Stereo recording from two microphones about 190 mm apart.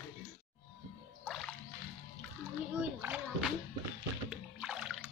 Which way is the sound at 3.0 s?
5° right (ahead or behind).